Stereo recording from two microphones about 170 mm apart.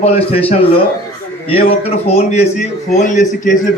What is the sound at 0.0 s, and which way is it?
A man's voice, 35° left (ahead or behind).